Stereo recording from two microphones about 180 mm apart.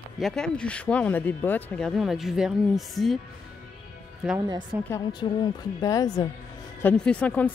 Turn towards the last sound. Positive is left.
turn(degrees=10)  # may be behind; listen again after turning